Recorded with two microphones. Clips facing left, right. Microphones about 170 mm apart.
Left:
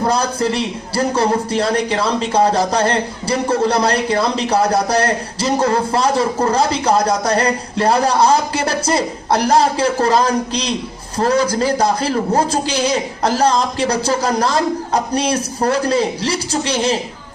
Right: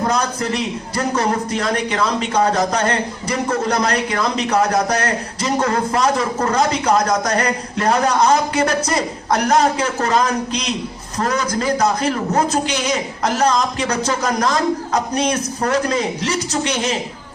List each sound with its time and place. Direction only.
0.1 s a man's voice: 30° left (ahead or behind)